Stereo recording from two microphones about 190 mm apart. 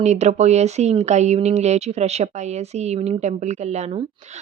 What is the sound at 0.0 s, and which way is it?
Speech, 35° right (ahead or behind).